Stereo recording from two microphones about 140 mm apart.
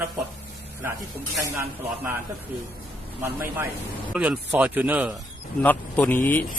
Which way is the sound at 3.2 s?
15° right (ahead or behind).